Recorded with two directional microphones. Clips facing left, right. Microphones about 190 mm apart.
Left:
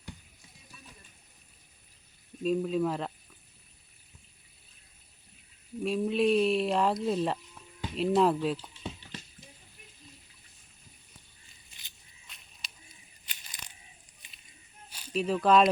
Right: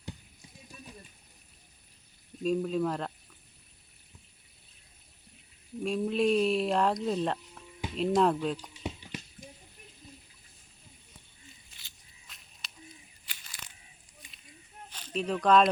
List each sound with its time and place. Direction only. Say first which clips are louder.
2.4 s speech: left 1 dB; centre (ahead or behind)
5.8 s speech: left 1 dB; centre (ahead or behind)
8.8 s a sound: right 3 dB; 15° right (ahead or behind)
12.3 s a sound: even; centre (ahead or behind)
13.3 s crushing: left 1 dB; 20° left (ahead or behind)
14.8 s speech: left 2 dB; 10° left (ahead or behind)